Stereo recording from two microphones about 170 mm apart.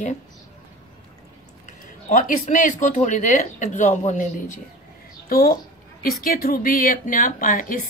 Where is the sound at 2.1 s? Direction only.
50° left (ahead or behind).